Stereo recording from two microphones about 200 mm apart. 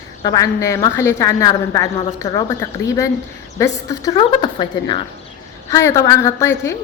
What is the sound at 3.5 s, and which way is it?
A woman's voice, 15° left (ahead or behind).